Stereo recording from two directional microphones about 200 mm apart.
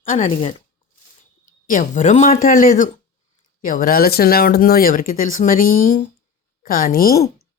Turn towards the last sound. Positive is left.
turn(degrees=45)  # may be behind; listen again after turning